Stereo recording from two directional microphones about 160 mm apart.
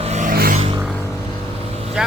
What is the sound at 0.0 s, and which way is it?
Music, 45° right (ahead or behind).